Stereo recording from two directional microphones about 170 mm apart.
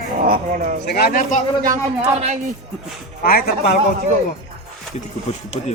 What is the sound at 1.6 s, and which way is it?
Speech, 45° right (ahead or behind).